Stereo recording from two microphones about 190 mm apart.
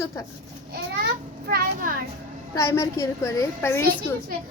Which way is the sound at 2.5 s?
15° left (ahead or behind).